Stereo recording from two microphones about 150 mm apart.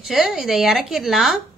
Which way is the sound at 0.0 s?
Centre (ahead or behind).